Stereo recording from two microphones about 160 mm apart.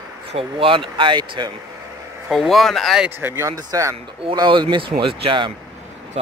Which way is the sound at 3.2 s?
15° right (ahead or behind).